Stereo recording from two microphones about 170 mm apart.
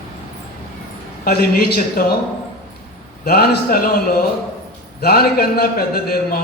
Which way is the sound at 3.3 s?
65° left (ahead or behind).